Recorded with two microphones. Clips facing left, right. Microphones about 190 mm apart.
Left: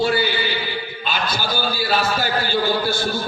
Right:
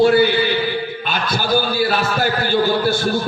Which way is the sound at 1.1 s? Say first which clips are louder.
Right 3 dB; 55° right (ahead or behind).